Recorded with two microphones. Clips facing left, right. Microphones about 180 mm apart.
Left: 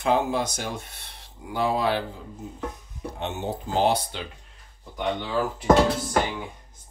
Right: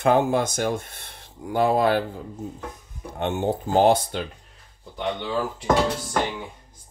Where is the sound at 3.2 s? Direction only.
55° right (ahead or behind).